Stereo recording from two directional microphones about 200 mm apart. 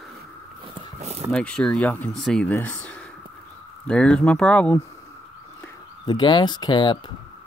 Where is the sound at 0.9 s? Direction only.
35° right (ahead or behind).